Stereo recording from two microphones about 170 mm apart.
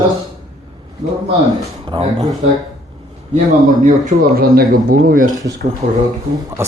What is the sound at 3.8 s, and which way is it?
Speech, 45° right (ahead or behind).